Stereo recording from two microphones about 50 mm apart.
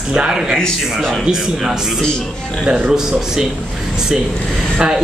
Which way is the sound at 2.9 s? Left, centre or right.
Centre.